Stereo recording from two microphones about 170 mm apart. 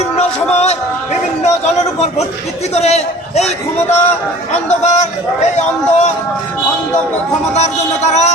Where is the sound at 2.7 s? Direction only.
40° left (ahead or behind).